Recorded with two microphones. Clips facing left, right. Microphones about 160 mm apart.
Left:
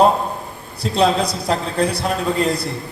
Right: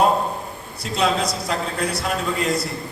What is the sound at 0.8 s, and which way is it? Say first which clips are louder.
A man's voice: left 5 dB; 30° left (ahead or behind).